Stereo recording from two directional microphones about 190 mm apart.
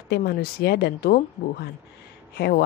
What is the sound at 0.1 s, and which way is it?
Speech, 55° left (ahead or behind).